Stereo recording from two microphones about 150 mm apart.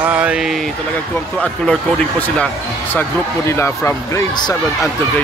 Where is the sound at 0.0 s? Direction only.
10° right (ahead or behind).